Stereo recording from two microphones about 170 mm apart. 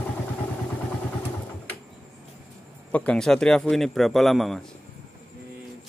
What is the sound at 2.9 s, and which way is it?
A man's voice, 5° left (ahead or behind).